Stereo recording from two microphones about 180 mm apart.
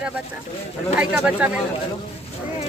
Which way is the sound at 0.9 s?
5° right (ahead or behind).